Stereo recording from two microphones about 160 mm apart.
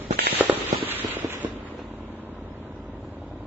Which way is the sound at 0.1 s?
80° right.